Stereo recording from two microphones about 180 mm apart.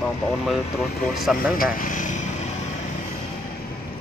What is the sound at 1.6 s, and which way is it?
Speech, 45° left (ahead or behind).